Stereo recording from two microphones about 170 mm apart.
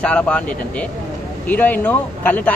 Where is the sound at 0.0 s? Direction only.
5° left (ahead or behind).